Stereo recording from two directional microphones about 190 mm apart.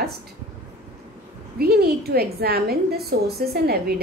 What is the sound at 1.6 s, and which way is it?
A woman's voice, 55° right (ahead or behind).